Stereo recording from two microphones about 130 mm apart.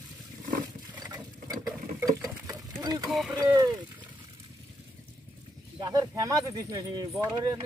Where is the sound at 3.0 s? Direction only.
Centre (ahead or behind).